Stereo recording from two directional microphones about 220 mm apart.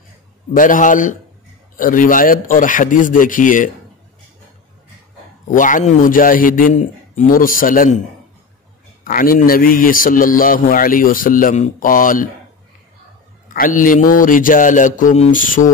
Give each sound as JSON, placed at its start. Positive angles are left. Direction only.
{"t": 0.5, "sound": "a man's voice", "side_deg": 35}
{"t": 5.5, "sound": "a man's voice", "side_deg": 35}
{"t": 9.0, "sound": "a man's voice", "side_deg": 40}
{"t": 13.5, "sound": "a man's voice", "side_deg": 40}